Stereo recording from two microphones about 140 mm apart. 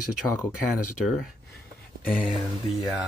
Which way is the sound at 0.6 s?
Centre (ahead or behind).